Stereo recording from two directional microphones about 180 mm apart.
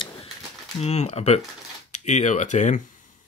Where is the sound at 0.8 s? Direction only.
35° left (ahead or behind).